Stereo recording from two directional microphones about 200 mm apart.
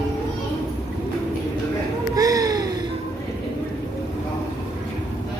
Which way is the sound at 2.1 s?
15° right (ahead or behind).